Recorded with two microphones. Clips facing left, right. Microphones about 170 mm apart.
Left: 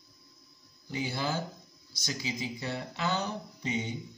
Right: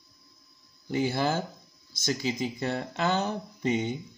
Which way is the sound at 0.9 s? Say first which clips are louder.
Right 6 dB; 55° right (ahead or behind).